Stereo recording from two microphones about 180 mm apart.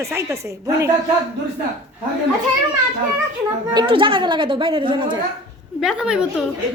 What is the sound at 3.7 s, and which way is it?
A woman's voice, 30° right (ahead or behind).